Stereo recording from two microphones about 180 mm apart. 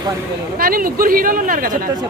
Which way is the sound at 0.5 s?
55° right (ahead or behind).